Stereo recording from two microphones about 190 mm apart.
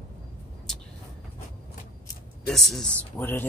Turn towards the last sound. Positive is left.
turn(degrees=10)  # may be behind; listen again after turning